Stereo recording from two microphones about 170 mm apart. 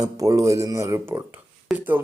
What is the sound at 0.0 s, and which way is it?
Speech, 20° right (ahead or behind).